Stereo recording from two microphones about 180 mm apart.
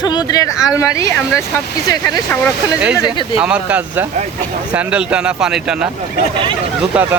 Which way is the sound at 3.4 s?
5° right (ahead or behind).